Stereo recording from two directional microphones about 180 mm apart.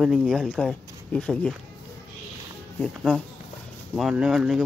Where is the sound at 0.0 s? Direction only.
Centre (ahead or behind).